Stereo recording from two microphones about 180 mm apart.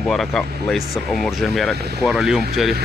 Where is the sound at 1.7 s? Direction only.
65° right (ahead or behind).